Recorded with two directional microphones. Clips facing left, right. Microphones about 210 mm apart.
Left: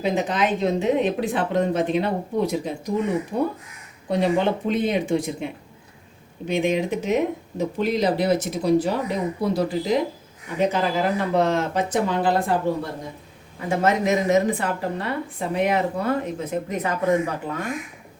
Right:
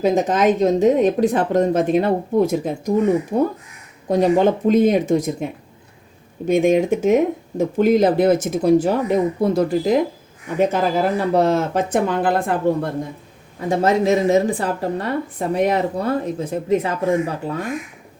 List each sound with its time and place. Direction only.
0.0 s speech: 45° right (ahead or behind)
6.5 s speech: 45° right (ahead or behind)
11.9 s speech: 55° right (ahead or behind)
13.7 s speech: 30° right (ahead or behind)